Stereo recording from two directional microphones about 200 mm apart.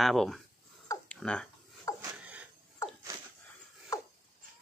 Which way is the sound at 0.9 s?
5° left (ahead or behind).